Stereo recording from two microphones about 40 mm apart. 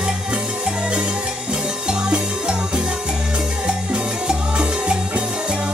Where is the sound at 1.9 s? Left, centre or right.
Right.